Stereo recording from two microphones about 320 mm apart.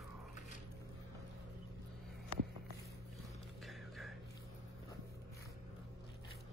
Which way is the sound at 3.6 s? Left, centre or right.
Centre.